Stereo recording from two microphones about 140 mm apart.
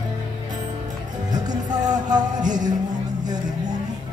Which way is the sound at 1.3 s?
30° right (ahead or behind).